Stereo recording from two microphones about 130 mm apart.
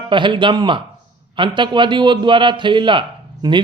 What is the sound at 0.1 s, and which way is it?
Speech, 40° right (ahead or behind).